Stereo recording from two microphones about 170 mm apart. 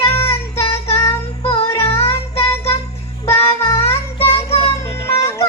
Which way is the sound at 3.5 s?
15° left (ahead or behind).